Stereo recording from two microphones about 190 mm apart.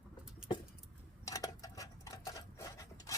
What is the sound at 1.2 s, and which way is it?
Sewing machine, 15° left (ahead or behind).